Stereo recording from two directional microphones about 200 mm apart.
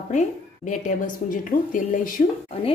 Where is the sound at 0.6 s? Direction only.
40° left (ahead or behind).